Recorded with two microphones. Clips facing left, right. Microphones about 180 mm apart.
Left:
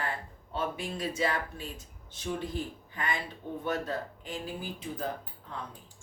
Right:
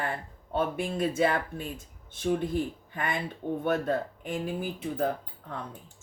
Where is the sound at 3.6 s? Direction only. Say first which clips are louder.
Right 5 dB; 55° right (ahead or behind).